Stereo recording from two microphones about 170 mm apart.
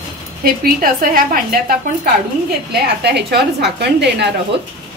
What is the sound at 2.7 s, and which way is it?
A woman's voice, 75° right (ahead or behind).